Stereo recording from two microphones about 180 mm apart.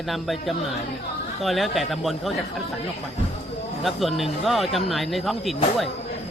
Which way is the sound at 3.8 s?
Centre (ahead or behind).